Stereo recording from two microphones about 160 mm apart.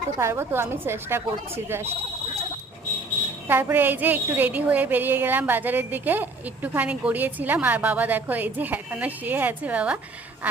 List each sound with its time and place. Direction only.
0.2 s a woman's voice: 15° right (ahead or behind)
3.4 s a woman's voice: 15° right (ahead or behind)